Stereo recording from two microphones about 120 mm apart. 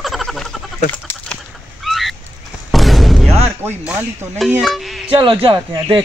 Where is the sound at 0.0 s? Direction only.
Centre (ahead or behind).